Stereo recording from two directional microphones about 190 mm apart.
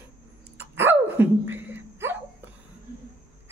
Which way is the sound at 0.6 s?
10° right (ahead or behind).